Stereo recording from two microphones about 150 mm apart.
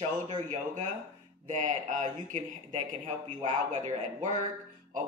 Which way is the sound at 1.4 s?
60° right (ahead or behind).